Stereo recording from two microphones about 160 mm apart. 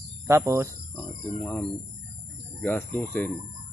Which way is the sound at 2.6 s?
10° left (ahead or behind).